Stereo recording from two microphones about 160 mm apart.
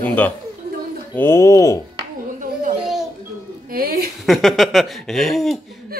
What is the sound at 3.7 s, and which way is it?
Speech, 65° right (ahead or behind).